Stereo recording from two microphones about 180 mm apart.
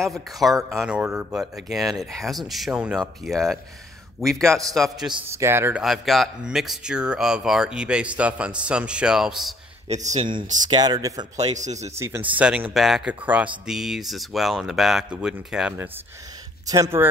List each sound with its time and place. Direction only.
0.0 s speech: centre (ahead or behind)
5.3 s speech: 15° right (ahead or behind)
9.8 s speech: 40° right (ahead or behind)
10.7 s speech: 20° right (ahead or behind)
11.3 s speech: 40° right (ahead or behind)
12.4 s speech: 5° right (ahead or behind)
16.6 s speech: 20° right (ahead or behind)